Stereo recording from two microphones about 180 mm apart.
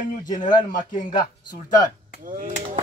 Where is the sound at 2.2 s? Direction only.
45° right (ahead or behind).